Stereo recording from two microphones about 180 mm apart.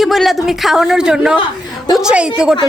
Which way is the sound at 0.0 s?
Centre (ahead or behind).